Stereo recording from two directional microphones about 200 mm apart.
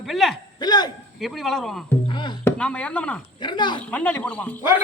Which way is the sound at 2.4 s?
5° left (ahead or behind).